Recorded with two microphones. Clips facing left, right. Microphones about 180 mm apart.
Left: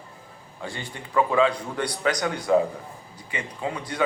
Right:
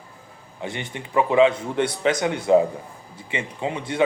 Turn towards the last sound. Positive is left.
turn(degrees=-25)  # may be behind; listen again after turning